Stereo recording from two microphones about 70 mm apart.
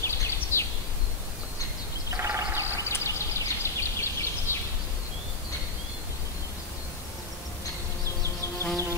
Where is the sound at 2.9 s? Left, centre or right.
Left.